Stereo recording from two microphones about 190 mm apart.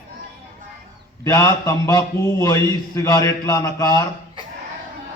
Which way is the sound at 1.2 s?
15° left (ahead or behind).